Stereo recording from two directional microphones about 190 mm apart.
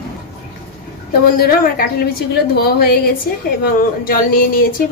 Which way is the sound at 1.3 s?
50° left (ahead or behind).